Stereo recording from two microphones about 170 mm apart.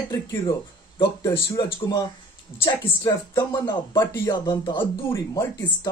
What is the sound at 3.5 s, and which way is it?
Speech, 25° left (ahead or behind).